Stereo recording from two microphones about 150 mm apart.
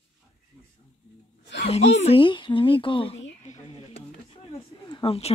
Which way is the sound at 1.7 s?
45° left (ahead or behind).